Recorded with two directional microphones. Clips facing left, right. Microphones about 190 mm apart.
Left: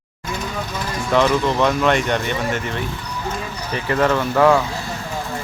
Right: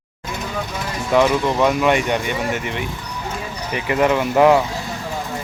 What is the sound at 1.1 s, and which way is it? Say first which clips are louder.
Speech: right 1 dB; 10° right (ahead or behind).